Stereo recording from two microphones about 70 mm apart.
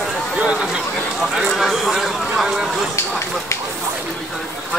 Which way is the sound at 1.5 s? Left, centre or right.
Centre.